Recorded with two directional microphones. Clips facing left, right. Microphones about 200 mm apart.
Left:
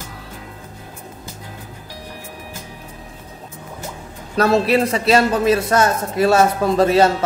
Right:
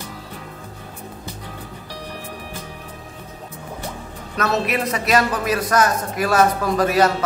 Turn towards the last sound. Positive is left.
turn(degrees=25)  # may be behind; listen again after turning